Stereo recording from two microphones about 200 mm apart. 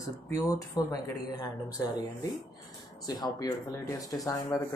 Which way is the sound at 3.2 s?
20° left (ahead or behind).